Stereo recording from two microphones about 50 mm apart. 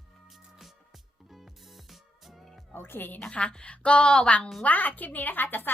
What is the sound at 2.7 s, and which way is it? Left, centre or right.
Speech, left.